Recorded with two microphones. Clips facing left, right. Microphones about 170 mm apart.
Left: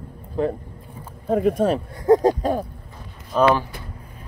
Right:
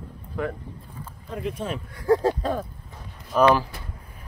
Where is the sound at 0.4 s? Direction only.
35° left (ahead or behind).